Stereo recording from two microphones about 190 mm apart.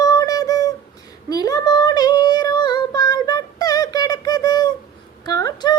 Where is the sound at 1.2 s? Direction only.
20° left (ahead or behind).